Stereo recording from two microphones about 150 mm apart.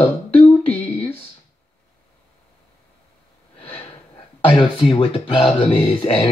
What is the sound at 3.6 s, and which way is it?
Snort, 40° left (ahead or behind).